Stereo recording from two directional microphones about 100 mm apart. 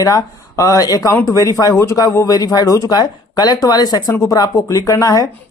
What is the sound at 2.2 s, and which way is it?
Speech, 40° left (ahead or behind).